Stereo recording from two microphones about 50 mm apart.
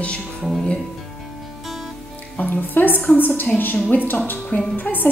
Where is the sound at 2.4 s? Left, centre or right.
Left.